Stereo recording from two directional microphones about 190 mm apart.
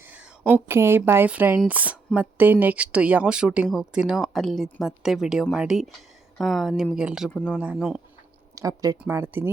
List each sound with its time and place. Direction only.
0.0 s speech: 10° right (ahead or behind)
7.3 s speech: 5° left (ahead or behind)
7.6 s speech: 5° right (ahead or behind)
8.5 s speech: 15° right (ahead or behind)